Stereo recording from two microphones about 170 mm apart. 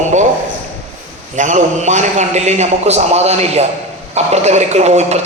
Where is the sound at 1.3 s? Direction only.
45° right (ahead or behind).